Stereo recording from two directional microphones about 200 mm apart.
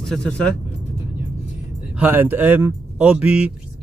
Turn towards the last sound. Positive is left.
turn(degrees=-5)  # may be behind; listen again after turning